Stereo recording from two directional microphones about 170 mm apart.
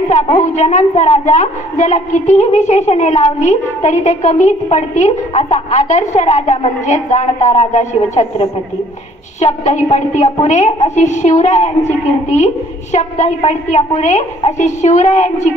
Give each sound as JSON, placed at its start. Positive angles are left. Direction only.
{"t": 0.1, "sound": "a woman's voice", "side_deg": 40}
{"t": 12.9, "sound": "a woman's voice", "side_deg": 40}